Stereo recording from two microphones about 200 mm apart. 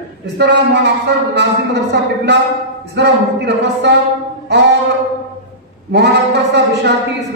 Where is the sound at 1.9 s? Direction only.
55° right (ahead or behind).